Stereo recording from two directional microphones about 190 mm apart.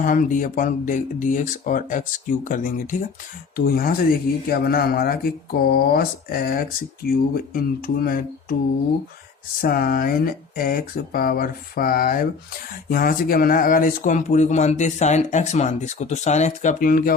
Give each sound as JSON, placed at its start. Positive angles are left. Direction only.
{"t": 0.0, "sound": "speech", "side_deg": 45}
{"t": 9.6, "sound": "speech", "side_deg": 50}